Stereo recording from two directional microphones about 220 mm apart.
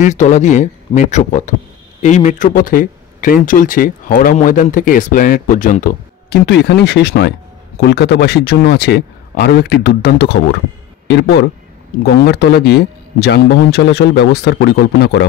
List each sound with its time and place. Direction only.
0.0 s a man's voice: 30° left (ahead or behind); by 15.2 s 50° left (ahead or behind)